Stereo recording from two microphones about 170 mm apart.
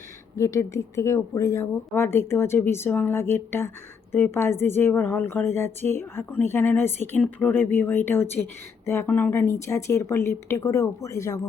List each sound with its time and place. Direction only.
0.3 s a woman's voice: 20° left (ahead or behind)